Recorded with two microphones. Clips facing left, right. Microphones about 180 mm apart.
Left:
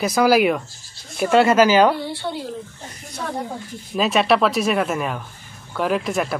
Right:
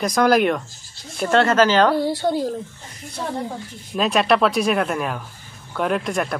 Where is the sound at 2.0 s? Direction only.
40° right (ahead or behind).